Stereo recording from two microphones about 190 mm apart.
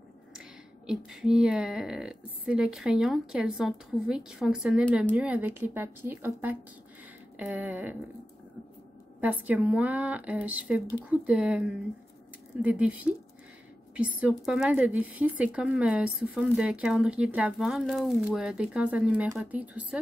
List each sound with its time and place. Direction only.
0.3 s a woman's voice: 5° right (ahead or behind)
9.2 s a woman's voice: 10° right (ahead or behind)